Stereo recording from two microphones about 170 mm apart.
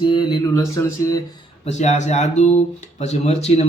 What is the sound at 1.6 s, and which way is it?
Speech, 40° left (ahead or behind).